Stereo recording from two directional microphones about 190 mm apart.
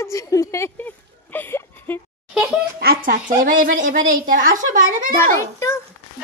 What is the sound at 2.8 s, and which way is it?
A woman's voice, 50° right (ahead or behind).